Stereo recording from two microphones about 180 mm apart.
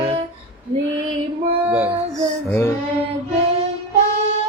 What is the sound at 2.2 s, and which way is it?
Child singing, 10° left (ahead or behind).